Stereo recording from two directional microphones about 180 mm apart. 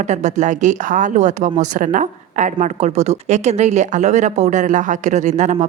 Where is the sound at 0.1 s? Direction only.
40° right (ahead or behind).